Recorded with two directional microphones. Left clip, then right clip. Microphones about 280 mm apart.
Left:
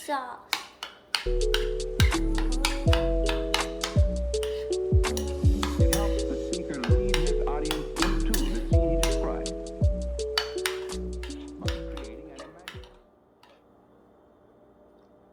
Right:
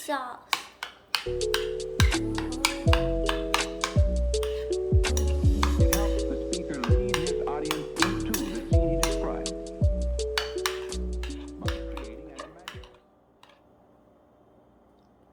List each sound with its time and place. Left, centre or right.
0.0 s music: centre